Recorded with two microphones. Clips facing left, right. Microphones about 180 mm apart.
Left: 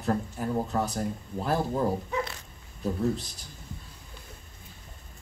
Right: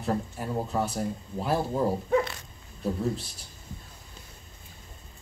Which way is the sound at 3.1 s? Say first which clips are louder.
Even; 30° right (ahead or behind).